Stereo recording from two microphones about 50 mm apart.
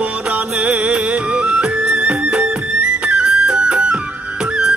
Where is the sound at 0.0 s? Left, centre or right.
Right.